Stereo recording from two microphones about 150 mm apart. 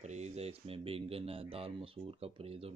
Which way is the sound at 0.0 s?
50° right (ahead or behind).